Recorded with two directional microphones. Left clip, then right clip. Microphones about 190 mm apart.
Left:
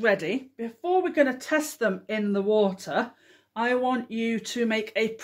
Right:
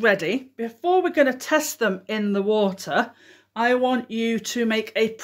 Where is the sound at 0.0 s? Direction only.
30° right (ahead or behind).